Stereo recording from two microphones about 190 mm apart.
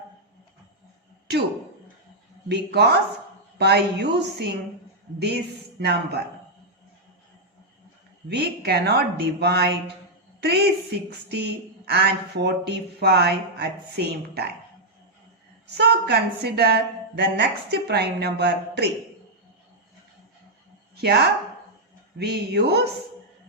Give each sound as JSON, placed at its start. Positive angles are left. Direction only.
{"t": 2.5, "sound": "a woman's voice", "side_deg": -60}
{"t": 5.8, "sound": "a woman's voice", "side_deg": -60}
{"t": 8.3, "sound": "a woman's voice", "side_deg": -60}
{"t": 15.7, "sound": "a woman's voice", "side_deg": -60}
{"t": 20.9, "sound": "a sound", "side_deg": -60}
{"t": 22.2, "sound": "a woman's voice", "side_deg": -60}